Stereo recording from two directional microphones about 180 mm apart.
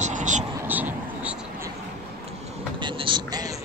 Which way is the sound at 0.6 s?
10° right (ahead or behind).